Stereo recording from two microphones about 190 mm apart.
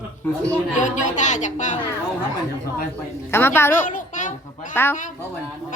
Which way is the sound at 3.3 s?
10° left (ahead or behind).